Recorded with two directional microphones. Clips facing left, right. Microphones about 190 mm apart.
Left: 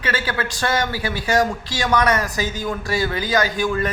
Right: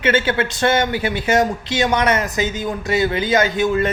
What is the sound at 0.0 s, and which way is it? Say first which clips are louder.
Speech: right 6 dB; 25° right (ahead or behind).